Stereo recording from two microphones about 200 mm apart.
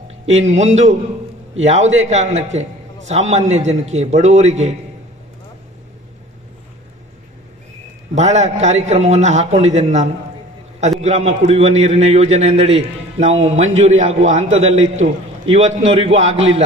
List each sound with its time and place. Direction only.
0.1 s a man's voice: 35° right (ahead or behind)
8.1 s a man's voice: 35° right (ahead or behind)